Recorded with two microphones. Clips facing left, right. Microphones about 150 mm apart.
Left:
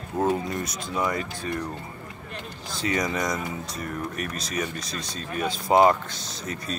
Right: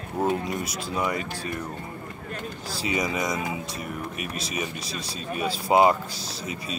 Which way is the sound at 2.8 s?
5° right (ahead or behind).